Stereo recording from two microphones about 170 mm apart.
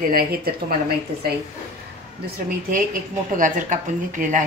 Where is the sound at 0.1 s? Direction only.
60° right (ahead or behind).